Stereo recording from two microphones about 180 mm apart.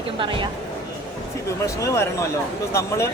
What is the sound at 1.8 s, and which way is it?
Speech, 15° left (ahead or behind).